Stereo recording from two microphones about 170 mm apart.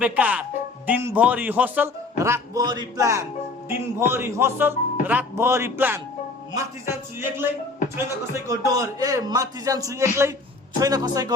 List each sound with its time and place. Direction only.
0.0 s a man's voice: 10° right (ahead or behind)